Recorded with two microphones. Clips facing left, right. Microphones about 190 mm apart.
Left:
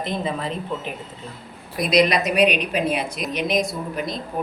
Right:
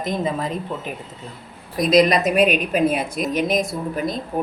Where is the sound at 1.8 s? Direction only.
45° right (ahead or behind).